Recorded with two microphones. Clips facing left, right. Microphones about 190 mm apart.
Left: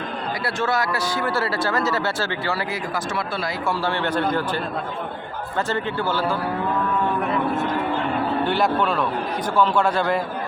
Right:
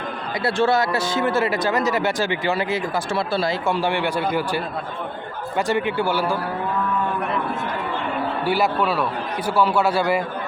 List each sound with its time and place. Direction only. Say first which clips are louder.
0.4 s speech: right 5 dB; 25° right (ahead or behind)
8.4 s speech: right 3 dB; 5° right (ahead or behind)